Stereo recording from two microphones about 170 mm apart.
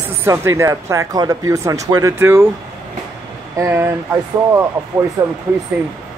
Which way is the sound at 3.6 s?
15° right (ahead or behind).